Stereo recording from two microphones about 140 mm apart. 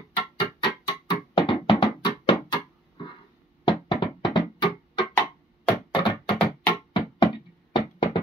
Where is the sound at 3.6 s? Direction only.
35° left (ahead or behind).